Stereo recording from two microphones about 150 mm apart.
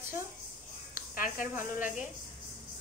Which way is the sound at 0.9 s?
70° left (ahead or behind).